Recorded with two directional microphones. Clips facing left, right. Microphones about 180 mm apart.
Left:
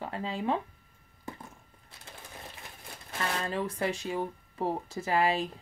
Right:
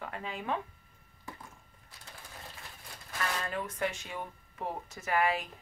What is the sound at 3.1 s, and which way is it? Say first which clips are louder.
Speech: left 3 dB; 25° left (ahead or behind).